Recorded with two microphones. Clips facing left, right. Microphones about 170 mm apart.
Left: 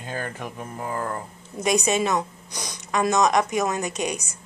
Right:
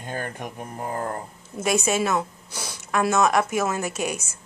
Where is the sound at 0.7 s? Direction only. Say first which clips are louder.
Even; 35° right (ahead or behind).